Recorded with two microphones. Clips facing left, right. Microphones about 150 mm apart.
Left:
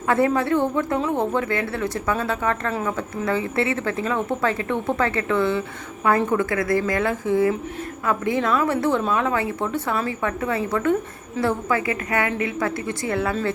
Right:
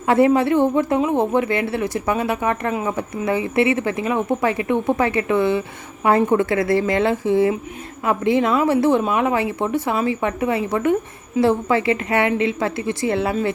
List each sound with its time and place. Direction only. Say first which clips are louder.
0.1 s speech: right 4 dB; 20° right (ahead or behind)